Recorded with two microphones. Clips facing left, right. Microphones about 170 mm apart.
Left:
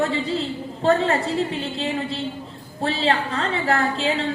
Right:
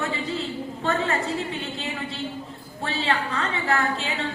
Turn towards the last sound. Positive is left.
turn(degrees=35)  # may be behind; listen again after turning